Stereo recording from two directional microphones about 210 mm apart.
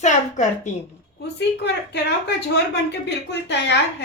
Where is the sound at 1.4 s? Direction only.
55° left (ahead or behind).